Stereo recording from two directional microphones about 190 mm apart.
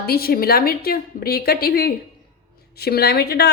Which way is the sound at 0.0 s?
55° left (ahead or behind).